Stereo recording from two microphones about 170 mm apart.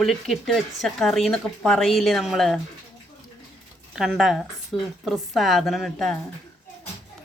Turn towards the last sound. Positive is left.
turn(degrees=0)  # may be behind; listen again after turning